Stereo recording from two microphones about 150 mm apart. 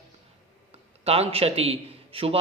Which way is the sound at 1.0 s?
40° right (ahead or behind).